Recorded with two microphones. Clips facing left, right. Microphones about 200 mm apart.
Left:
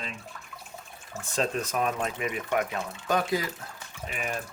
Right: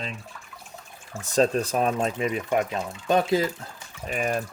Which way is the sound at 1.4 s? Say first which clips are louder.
Right 6 dB; 35° right (ahead or behind).